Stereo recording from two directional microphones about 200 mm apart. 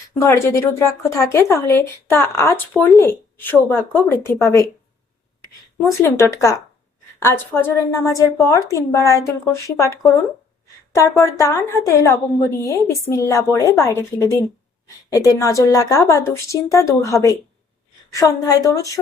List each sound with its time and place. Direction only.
0.2 s a woman's voice: 15° left (ahead or behind)
5.8 s a woman's voice: 10° left (ahead or behind)
11.3 s a woman's voice: 15° left (ahead or behind)